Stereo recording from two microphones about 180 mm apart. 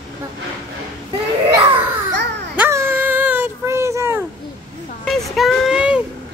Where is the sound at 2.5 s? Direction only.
10° right (ahead or behind).